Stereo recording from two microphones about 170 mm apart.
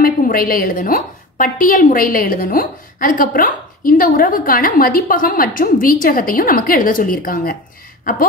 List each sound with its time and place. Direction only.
0.0 s a woman's voice: 55° left (ahead or behind)